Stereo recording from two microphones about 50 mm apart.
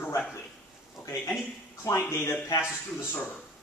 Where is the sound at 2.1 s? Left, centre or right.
Left.